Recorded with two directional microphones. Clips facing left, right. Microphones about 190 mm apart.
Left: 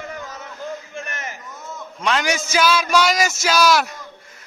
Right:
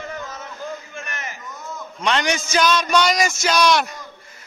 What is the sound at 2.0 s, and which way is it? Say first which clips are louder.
A man's voice: even; 5° left (ahead or behind).